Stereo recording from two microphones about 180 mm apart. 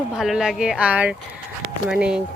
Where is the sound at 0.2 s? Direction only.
Centre (ahead or behind).